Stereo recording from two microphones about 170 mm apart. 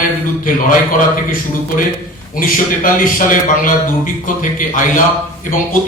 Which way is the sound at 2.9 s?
50° left (ahead or behind).